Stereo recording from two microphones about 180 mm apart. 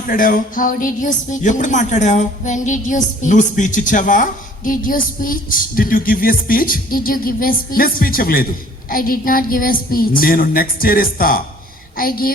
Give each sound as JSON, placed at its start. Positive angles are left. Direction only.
{"t": 0.1, "sound": "speech", "side_deg": 50}